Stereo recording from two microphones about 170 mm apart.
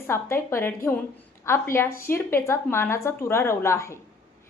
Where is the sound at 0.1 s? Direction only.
15° left (ahead or behind).